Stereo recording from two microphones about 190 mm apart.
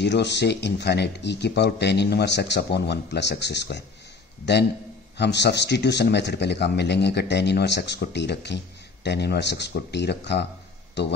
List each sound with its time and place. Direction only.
0.0 s speech: 65° left (ahead or behind)